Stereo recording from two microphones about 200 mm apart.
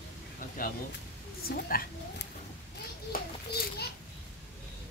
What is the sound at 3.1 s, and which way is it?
Children playing, 50° left (ahead or behind).